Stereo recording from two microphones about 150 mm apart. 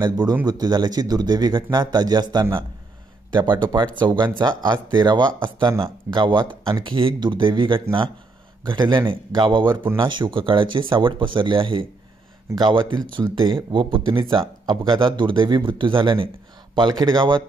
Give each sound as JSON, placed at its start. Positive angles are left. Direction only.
{"t": 0.0, "sound": "speech", "side_deg": -25}